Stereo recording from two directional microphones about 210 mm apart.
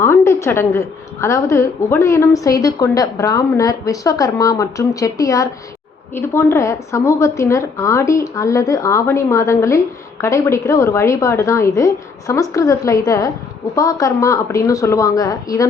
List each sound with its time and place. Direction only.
0.0 s a woman's voice: 15° left (ahead or behind)